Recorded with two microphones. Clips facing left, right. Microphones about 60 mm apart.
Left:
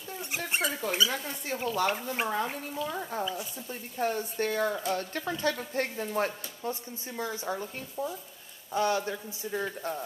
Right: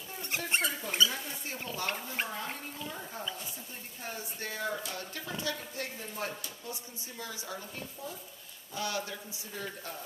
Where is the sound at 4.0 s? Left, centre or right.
Left.